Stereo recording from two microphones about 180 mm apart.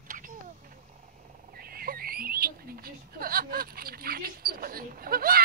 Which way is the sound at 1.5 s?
55° right (ahead or behind).